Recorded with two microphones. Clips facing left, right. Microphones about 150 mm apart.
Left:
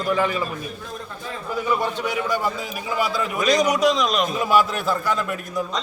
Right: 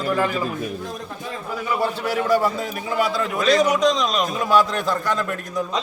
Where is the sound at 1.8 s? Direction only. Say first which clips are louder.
Right 2 dB; 5° right (ahead or behind).